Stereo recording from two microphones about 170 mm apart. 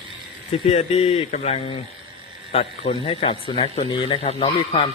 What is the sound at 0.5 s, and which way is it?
Speech, 35° left (ahead or behind).